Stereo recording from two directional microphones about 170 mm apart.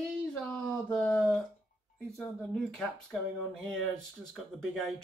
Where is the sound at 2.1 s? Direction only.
Centre (ahead or behind).